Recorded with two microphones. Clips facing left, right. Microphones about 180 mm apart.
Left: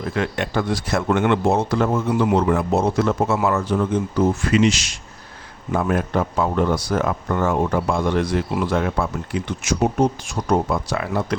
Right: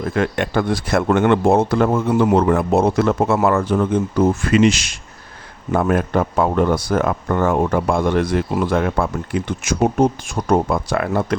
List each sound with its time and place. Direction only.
0.0 s speech: 50° right (ahead or behind)